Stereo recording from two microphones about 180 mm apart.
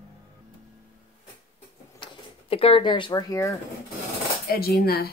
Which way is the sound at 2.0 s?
30° left (ahead or behind).